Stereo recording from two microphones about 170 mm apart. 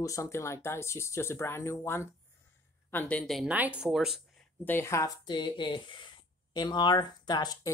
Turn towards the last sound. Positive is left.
turn(degrees=25)  # may be behind; listen again after turning